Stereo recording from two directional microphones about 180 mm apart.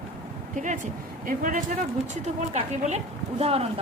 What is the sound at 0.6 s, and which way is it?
Speech, 45° right (ahead or behind).